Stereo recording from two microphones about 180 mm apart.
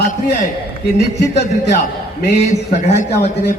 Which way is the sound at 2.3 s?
40° left (ahead or behind).